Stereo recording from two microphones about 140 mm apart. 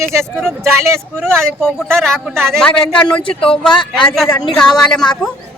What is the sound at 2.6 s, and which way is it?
Speech, 5° left (ahead or behind).